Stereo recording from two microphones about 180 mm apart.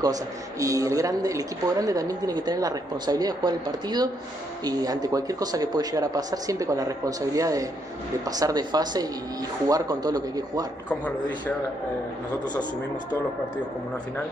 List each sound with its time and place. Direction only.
0.0 s speech: 20° right (ahead or behind)
10.9 s a man's voice: 10° left (ahead or behind)